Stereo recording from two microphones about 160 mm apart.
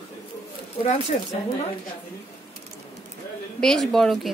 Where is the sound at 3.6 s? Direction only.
Centre (ahead or behind).